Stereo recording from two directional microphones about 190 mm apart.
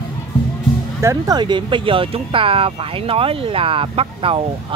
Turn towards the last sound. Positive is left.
turn(degrees=-30)  # may be behind; listen again after turning